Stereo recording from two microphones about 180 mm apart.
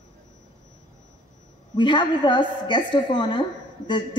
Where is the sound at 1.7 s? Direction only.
25° left (ahead or behind).